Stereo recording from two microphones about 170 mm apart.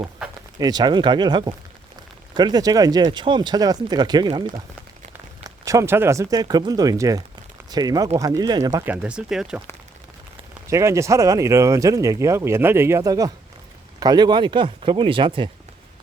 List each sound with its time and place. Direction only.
0.6 s speech: 25° right (ahead or behind)
8.9 s speech: 5° right (ahead or behind)
10.7 s speech: 15° right (ahead or behind)